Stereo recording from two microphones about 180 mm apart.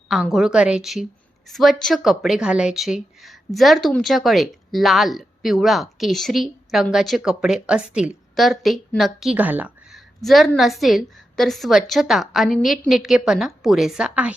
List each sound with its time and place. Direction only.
0.1 s a woman's voice: centre (ahead or behind)